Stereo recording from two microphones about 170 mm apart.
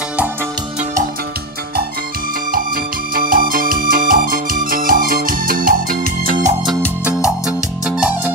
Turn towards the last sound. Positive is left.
turn(degrees=-50)  # may be behind; listen again after turning